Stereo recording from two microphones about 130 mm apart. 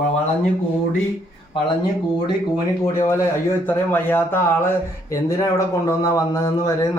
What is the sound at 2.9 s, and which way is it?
Speech, 20° left (ahead or behind).